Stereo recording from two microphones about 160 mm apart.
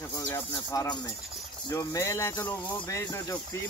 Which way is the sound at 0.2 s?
20° left (ahead or behind).